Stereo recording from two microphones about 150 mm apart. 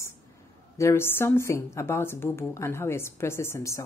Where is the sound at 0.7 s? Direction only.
15° left (ahead or behind).